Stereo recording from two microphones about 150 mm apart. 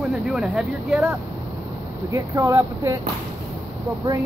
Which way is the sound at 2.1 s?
20° right (ahead or behind).